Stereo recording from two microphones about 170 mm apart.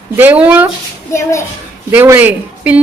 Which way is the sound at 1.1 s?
15° left (ahead or behind).